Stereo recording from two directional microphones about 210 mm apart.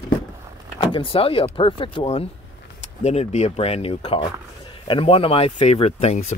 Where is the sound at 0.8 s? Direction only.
25° left (ahead or behind).